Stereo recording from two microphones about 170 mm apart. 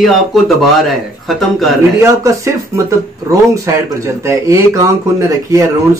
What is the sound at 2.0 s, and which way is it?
Speech, 15° right (ahead or behind).